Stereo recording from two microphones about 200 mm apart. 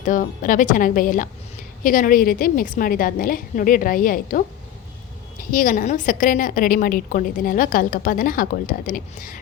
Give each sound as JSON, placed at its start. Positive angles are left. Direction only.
{"t": 0.0, "sound": "a woman's voice", "side_deg": 40}
{"t": 5.5, "sound": "a woman's voice", "side_deg": 45}